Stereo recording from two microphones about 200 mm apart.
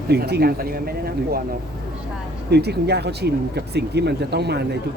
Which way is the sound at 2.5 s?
55° right (ahead or behind).